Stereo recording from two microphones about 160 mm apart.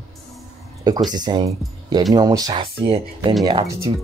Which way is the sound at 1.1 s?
25° right (ahead or behind).